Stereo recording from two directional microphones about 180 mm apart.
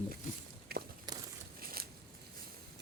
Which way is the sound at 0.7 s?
60° right (ahead or behind).